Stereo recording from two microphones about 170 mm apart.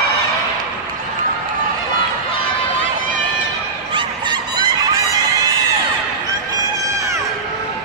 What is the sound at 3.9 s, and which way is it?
Fowl, 25° right (ahead or behind).